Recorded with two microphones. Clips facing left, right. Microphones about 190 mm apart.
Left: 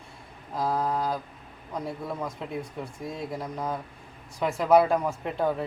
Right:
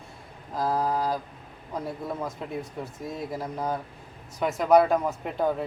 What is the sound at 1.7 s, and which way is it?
Speech, 5° right (ahead or behind).